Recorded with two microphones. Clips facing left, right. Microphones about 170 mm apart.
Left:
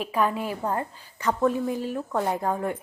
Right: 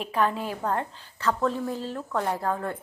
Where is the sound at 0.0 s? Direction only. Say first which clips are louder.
Left 1 dB; 10° left (ahead or behind).